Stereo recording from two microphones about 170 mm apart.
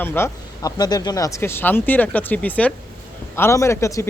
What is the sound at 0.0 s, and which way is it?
Speech, 15° left (ahead or behind).